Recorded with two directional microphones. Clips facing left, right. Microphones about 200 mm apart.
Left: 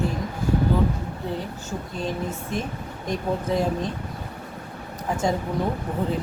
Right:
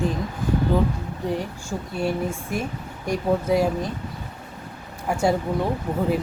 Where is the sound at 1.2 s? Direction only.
15° right (ahead or behind).